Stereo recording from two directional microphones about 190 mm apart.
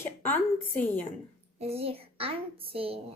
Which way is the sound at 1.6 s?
30° right (ahead or behind).